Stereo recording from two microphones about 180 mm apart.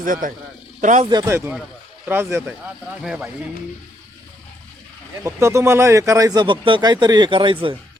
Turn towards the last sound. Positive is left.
turn(degrees=-30)  # may be behind; listen again after turning